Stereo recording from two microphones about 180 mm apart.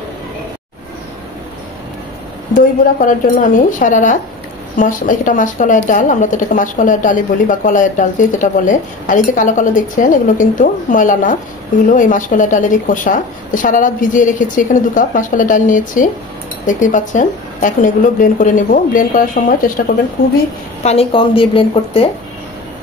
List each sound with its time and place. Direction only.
2.5 s a woman's voice: 50° left (ahead or behind)
20.8 s a woman's voice: 35° left (ahead or behind)